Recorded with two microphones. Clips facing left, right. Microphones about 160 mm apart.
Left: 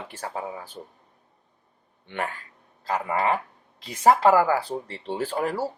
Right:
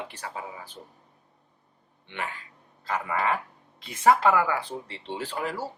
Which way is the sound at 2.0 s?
45° left (ahead or behind).